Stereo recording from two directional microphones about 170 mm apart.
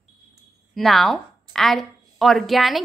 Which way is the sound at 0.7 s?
Centre (ahead or behind).